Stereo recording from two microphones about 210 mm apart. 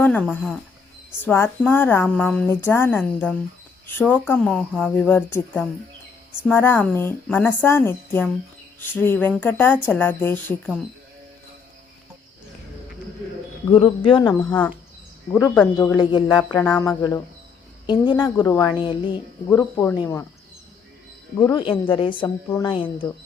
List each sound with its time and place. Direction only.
0.0 s speech: 5° left (ahead or behind)
13.7 s a woman's voice: 25° left (ahead or behind)
15.3 s speech: 10° left (ahead or behind)
16.6 s a woman's voice: 10° left (ahead or behind)
19.5 s speech: 10° left (ahead or behind)
21.5 s a woman's voice: 25° left (ahead or behind)